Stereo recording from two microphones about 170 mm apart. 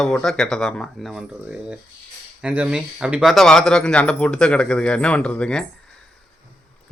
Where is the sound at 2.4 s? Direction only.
5° right (ahead or behind).